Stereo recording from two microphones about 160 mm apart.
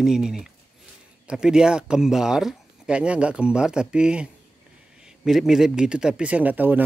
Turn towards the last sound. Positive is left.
turn(degrees=-10)  # may be behind; listen again after turning